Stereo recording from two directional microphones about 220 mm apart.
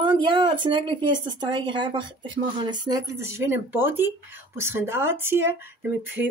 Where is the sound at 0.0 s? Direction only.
20° right (ahead or behind).